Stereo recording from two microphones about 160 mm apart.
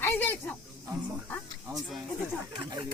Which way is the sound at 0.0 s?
10° left (ahead or behind).